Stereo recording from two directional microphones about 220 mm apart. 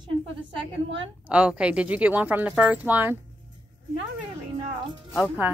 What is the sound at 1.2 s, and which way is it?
A woman's voice, 5° right (ahead or behind).